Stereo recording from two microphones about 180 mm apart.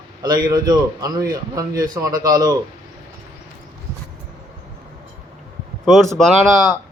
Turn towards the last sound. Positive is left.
turn(degrees=0)  # may be behind; listen again after turning